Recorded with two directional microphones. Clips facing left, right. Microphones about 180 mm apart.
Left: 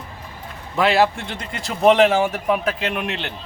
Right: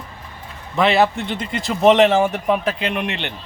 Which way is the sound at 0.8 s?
Centre (ahead or behind).